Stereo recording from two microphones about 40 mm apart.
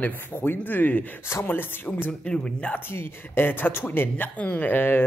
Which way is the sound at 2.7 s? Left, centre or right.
Left.